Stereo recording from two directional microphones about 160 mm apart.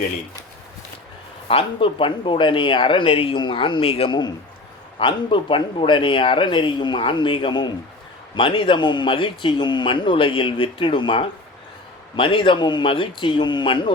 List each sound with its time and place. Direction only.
1.5 s speech: 35° left (ahead or behind)